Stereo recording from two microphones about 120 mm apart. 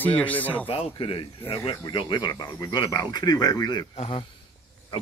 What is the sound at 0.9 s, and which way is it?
Speech, 50° left (ahead or behind).